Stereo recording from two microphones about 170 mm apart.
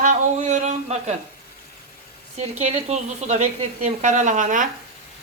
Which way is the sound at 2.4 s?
40° right (ahead or behind).